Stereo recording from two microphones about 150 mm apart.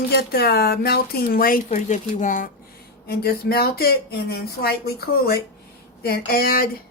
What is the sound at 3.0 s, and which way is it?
A woman's voice, 90° left.